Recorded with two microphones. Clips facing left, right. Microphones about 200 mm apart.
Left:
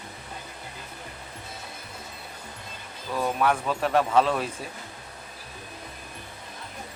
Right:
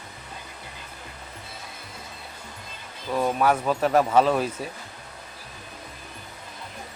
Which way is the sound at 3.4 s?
Centre (ahead or behind).